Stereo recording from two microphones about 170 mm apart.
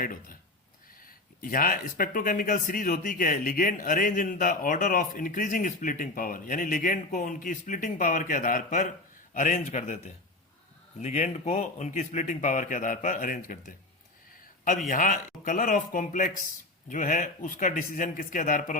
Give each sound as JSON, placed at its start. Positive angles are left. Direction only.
{"t": 0.0, "sound": "speech", "side_deg": 55}
{"t": 11.0, "sound": "speech", "side_deg": 40}